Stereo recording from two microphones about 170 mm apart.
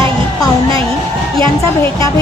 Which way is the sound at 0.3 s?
20° left (ahead or behind).